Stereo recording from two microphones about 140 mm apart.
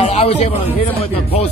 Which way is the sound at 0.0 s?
50° left (ahead or behind).